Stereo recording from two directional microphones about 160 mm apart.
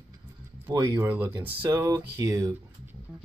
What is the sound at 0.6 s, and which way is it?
Speech, 15° right (ahead or behind).